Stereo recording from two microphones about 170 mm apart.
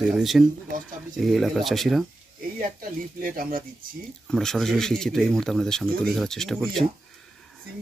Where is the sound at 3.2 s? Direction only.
55° right (ahead or behind).